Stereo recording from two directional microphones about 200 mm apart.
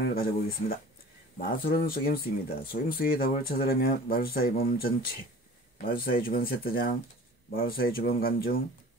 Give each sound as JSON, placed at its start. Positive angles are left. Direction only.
{"t": 0.0, "sound": "speech", "side_deg": 50}